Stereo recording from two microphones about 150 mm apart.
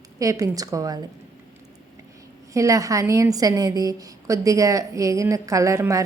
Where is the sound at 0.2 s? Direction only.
20° right (ahead or behind).